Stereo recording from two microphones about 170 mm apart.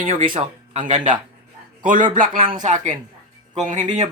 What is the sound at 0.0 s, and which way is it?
Speech, 55° right (ahead or behind).